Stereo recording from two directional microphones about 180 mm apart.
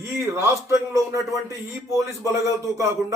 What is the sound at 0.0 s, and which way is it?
A man's voice, 15° right (ahead or behind).